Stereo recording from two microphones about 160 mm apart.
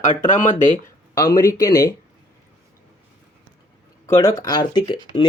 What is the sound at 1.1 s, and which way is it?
Speech, 25° left (ahead or behind).